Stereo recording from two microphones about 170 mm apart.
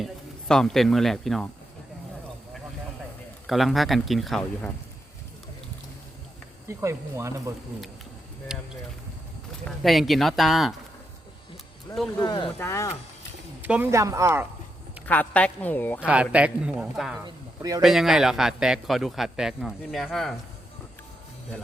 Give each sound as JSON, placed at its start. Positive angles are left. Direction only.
{"t": 0.0, "sound": "speech", "side_deg": 5}
{"t": 3.4, "sound": "speech", "side_deg": 0}
{"t": 6.7, "sound": "speech", "side_deg": -15}
{"t": 9.6, "sound": "speech", "side_deg": 0}
{"t": 11.9, "sound": "a woman's voice", "side_deg": 15}
{"t": 13.6, "sound": "speech", "side_deg": -10}
{"t": 15.0, "sound": "a woman's voice", "side_deg": 10}
{"t": 16.0, "sound": "speech", "side_deg": -5}
{"t": 17.2, "sound": "a sound", "side_deg": -20}
{"t": 17.8, "sound": "speech", "side_deg": 0}